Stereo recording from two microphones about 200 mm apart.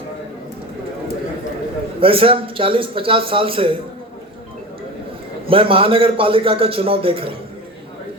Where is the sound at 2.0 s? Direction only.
30° right (ahead or behind).